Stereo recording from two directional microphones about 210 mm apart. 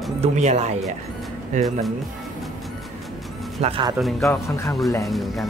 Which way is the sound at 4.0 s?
Centre (ahead or behind).